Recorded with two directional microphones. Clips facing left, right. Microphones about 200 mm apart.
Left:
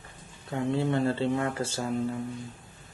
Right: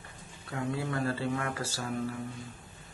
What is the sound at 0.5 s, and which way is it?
Speech, 25° left (ahead or behind).